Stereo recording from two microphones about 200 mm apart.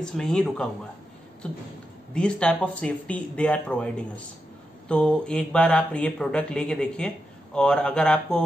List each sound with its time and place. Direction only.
0.0 s speech: 5° left (ahead or behind)
2.1 s speech: 5° left (ahead or behind)